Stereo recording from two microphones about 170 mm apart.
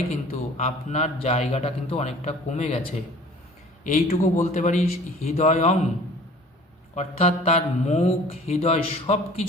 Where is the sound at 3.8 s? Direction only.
50° left (ahead or behind).